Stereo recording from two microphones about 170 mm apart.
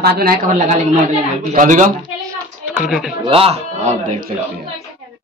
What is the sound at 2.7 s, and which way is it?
Speech, 5° right (ahead or behind).